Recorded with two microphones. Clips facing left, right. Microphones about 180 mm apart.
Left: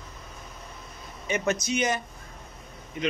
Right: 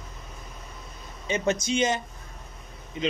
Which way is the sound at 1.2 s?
25° right (ahead or behind).